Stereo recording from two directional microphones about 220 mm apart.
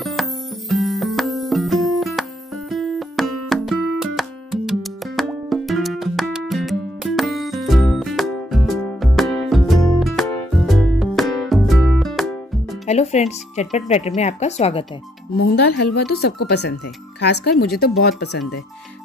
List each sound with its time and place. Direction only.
0.0 s music: centre (ahead or behind)
12.8 s speech: 30° left (ahead or behind)
15.3 s speech: 50° left (ahead or behind)